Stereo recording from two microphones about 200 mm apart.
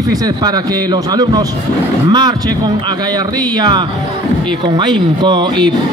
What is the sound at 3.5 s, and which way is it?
A man's voice, 20° right (ahead or behind).